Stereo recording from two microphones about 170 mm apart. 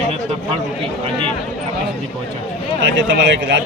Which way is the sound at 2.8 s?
90° right.